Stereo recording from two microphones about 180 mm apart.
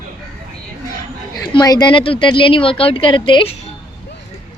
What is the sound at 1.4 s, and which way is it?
A woman's voice, 20° left (ahead or behind).